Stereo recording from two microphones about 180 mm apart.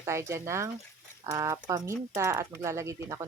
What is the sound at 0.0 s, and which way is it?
Speech, 15° right (ahead or behind).